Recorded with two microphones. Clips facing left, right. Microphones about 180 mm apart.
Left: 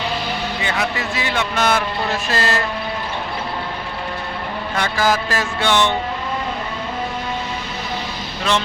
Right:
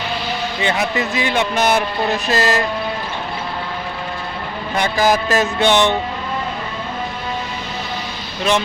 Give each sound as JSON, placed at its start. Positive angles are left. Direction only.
{"t": 0.6, "sound": "speech", "side_deg": -20}
{"t": 4.7, "sound": "speech", "side_deg": -20}